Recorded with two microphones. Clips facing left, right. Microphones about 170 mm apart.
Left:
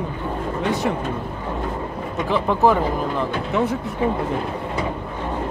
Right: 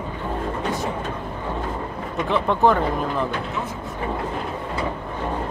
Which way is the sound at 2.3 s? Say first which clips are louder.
Left 1 dB; 5° left (ahead or behind).